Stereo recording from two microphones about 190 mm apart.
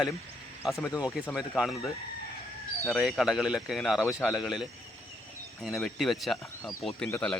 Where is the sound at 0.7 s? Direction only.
15° left (ahead or behind).